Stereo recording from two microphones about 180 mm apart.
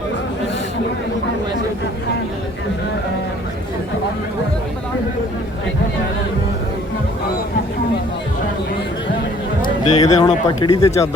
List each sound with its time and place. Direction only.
9.6 s speech: 35° left (ahead or behind)
10.7 s speech: 20° left (ahead or behind)